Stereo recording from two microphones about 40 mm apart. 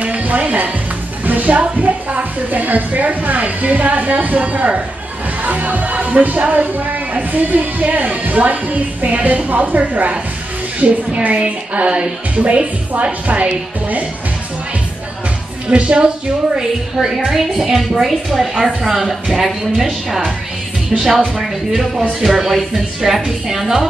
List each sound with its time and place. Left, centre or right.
0.0 s music: right
1.2 s speech: right
15.7 s a woman's voice: right
17.3 s a woman's voice: centre
18.5 s a woman's voice: centre
18.8 s a woman's voice: centre
21.4 s a woman's voice: centre